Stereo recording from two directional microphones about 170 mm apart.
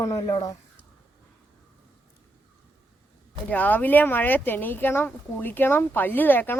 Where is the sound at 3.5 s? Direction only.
10° left (ahead or behind).